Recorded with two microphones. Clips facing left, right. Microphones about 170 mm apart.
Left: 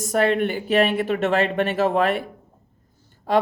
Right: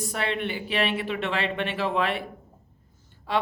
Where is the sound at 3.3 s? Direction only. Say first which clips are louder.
Left 7 dB; 45° left (ahead or behind).